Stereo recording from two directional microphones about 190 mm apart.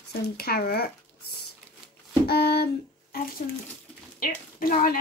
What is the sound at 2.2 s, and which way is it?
Speech, 55° left (ahead or behind).